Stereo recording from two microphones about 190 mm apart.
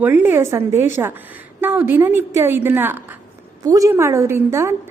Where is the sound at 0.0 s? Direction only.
10° right (ahead or behind).